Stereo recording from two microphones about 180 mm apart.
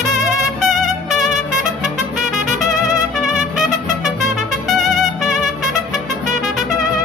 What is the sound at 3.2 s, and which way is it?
Trumpet, 5° right (ahead or behind).